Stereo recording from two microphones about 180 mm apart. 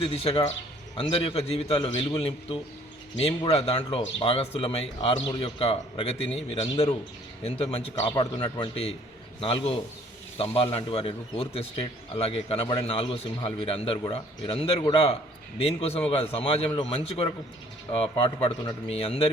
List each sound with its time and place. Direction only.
0.0 s a man's voice: 35° left (ahead or behind)